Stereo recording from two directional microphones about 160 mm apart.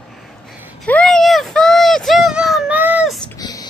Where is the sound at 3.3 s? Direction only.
25° left (ahead or behind).